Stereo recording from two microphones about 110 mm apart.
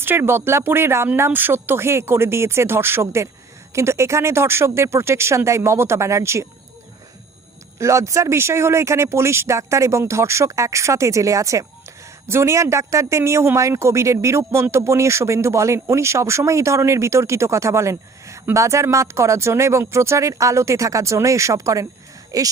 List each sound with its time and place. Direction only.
0.0 s speech: 20° right (ahead or behind)
7.8 s speech: 25° right (ahead or behind)